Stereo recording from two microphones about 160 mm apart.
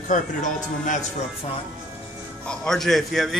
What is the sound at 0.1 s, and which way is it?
Speech, 50° left (ahead or behind).